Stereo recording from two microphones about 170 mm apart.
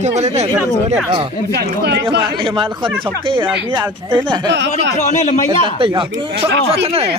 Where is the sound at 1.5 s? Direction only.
75° right (ahead or behind).